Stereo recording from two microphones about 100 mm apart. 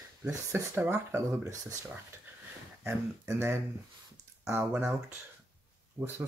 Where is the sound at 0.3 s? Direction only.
25° right (ahead or behind).